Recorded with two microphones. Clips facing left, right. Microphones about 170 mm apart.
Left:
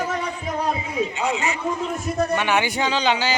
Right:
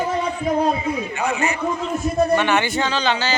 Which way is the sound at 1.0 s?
20° left (ahead or behind).